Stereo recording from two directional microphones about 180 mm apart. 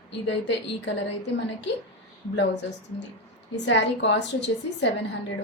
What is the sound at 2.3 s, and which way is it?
A woman's voice, 75° left (ahead or behind).